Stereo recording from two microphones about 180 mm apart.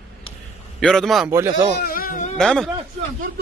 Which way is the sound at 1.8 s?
55° left (ahead or behind).